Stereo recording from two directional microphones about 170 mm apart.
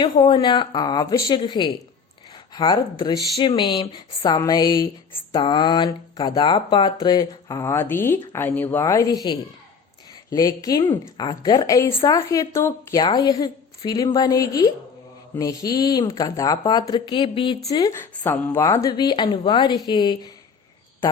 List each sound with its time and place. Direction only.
0.0 s speech: 30° left (ahead or behind)
3.3 s a woman's voice: 30° left (ahead or behind)